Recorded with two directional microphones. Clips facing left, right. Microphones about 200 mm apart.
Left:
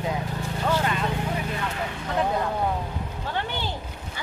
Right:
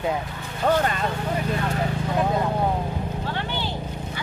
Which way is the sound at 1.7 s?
40° right (ahead or behind).